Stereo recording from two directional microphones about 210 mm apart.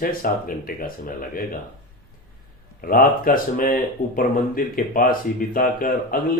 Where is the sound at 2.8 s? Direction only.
45° left (ahead or behind).